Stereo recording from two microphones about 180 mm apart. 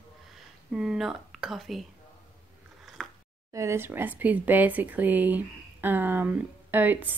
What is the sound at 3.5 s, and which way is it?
Speech, 15° right (ahead or behind).